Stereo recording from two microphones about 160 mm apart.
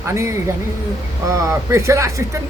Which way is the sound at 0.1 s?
15° right (ahead or behind).